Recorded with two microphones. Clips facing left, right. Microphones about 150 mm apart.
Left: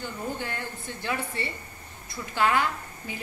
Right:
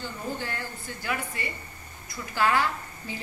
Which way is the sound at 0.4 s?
20° left (ahead or behind).